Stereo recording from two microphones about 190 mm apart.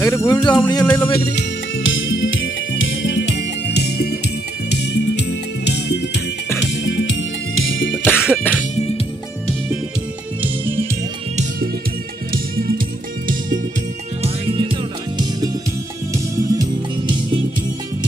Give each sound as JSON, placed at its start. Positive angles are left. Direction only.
{"t": 0.0, "sound": "speech", "side_deg": 15}
{"t": 0.8, "sound": "music", "side_deg": 10}
{"t": 1.9, "sound": "music", "side_deg": 90}
{"t": 8.0, "sound": "music", "side_deg": 10}
{"t": 8.7, "sound": "music", "side_deg": 35}
{"t": 12.3, "sound": "music", "side_deg": -50}
{"t": 14.2, "sound": "music", "side_deg": -30}
{"t": 16.1, "sound": "music", "side_deg": -15}